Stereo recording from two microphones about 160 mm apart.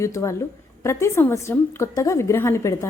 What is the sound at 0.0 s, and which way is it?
Speech, 20° left (ahead or behind).